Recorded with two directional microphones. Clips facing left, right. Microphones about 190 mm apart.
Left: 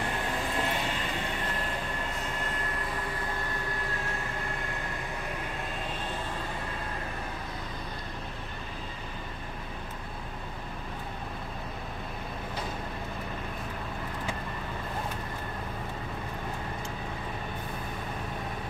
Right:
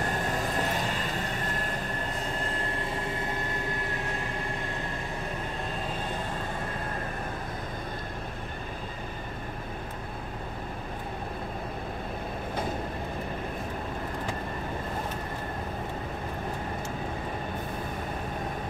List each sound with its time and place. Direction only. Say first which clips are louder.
0.0 s vehicle: right 2 dB; 40° right (ahead or behind)
2.4 s vehicle: right 2 dB; 30° right (ahead or behind)